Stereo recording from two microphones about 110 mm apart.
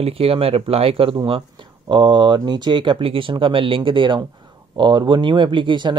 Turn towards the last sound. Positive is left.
turn(degrees=-45)  # may be behind; listen again after turning